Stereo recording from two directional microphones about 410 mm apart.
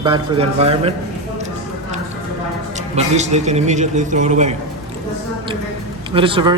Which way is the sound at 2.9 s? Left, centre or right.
Centre.